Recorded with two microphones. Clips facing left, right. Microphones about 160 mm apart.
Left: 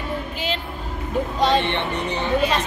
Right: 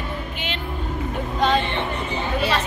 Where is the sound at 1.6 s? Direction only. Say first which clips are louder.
Left 2 dB; 70° left (ahead or behind).